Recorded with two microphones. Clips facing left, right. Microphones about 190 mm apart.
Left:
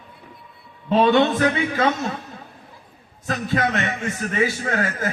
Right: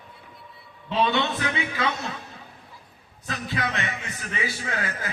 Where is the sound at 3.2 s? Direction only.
45° left (ahead or behind).